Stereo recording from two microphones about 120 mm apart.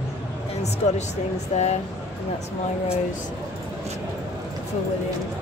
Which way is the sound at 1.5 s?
70° left (ahead or behind).